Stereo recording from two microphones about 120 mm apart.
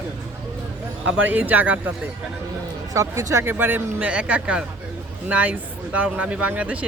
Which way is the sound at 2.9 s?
25° right (ahead or behind).